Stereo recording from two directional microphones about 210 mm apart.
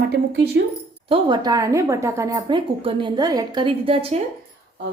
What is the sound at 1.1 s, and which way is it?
A woman's voice, 20° right (ahead or behind).